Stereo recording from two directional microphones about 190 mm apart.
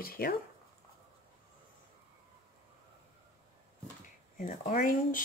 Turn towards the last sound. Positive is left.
turn(degrees=45)  # may be behind; listen again after turning